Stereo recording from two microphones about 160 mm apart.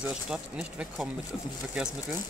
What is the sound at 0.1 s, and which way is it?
Speech, 5° right (ahead or behind).